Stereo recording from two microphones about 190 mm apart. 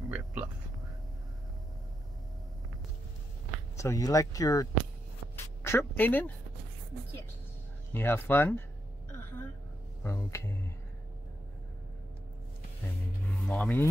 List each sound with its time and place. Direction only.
0.1 s a sound: 5° right (ahead or behind)
3.7 s speech: 15° left (ahead or behind)
5.3 s a sound: 15° left (ahead or behind)
7.9 s speech: 10° left (ahead or behind)
10.0 s speech: 15° left (ahead or behind)
13.5 s speech: 10° left (ahead or behind)